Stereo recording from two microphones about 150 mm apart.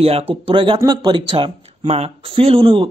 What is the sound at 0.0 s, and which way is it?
Speech, 40° right (ahead or behind).